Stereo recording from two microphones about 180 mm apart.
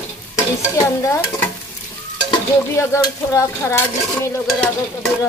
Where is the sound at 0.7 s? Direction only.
20° left (ahead or behind).